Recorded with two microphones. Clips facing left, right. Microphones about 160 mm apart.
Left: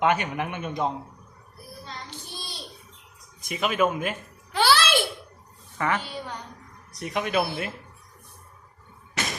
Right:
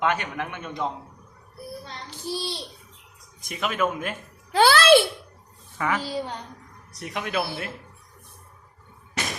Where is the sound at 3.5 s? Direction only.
5° left (ahead or behind).